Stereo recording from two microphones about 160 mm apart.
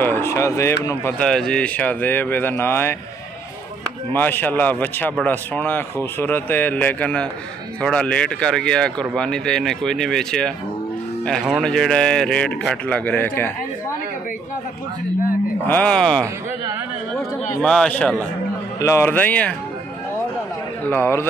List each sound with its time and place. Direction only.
0.0 s speech: 15° left (ahead or behind)
1.2 s speech: 5° left (ahead or behind)
4.1 s speech: 10° left (ahead or behind)
15.6 s speech: 10° left (ahead or behind)
20.9 s speech: 15° left (ahead or behind)